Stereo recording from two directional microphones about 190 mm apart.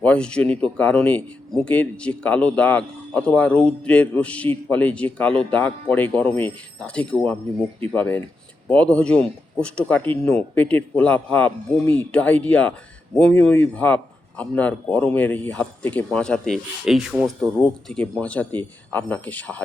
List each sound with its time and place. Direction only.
0.0 s speech: 5° left (ahead or behind)
17.6 s speech: 5° left (ahead or behind)